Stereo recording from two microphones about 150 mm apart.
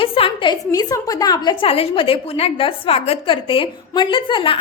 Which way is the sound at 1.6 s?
40° left (ahead or behind).